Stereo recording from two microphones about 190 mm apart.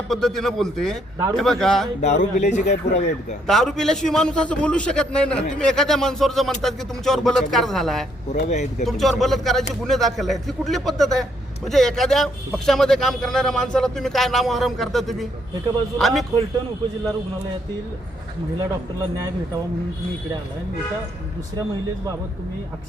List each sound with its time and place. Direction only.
0.1 s speech: centre (ahead or behind)
2.0 s speech: 40° left (ahead or behind)
3.4 s speech: centre (ahead or behind)
8.3 s speech: 40° left (ahead or behind)
8.8 s speech: centre (ahead or behind)